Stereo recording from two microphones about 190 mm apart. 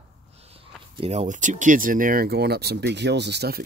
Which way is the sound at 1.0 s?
35° right (ahead or behind).